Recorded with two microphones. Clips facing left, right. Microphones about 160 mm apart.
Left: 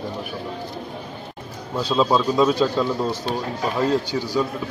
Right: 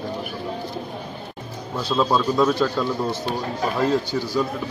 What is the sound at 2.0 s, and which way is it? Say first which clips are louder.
A man's voice: left 1 dB; 5° left (ahead or behind).